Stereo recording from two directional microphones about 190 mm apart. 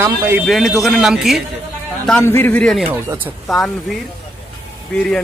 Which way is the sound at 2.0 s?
10° left (ahead or behind).